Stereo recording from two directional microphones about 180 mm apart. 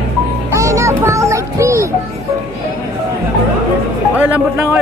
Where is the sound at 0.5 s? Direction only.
15° right (ahead or behind).